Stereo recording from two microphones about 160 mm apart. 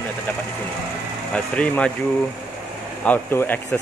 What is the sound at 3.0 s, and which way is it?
Speech, 10° left (ahead or behind).